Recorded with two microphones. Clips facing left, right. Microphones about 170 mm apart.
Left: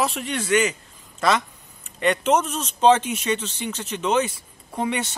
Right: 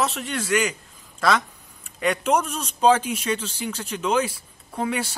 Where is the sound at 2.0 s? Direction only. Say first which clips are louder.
Left 2 dB; 5° right (ahead or behind).